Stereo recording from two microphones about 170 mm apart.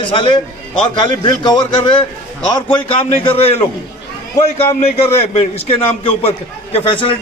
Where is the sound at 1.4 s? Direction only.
25° left (ahead or behind).